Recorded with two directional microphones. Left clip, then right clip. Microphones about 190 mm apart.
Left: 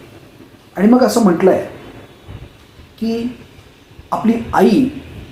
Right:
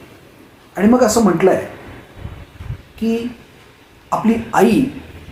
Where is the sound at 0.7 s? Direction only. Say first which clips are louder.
Left 1 dB; 15° left (ahead or behind).